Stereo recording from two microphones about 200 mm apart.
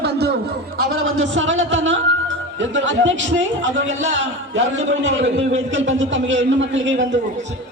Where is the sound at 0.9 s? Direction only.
90° right.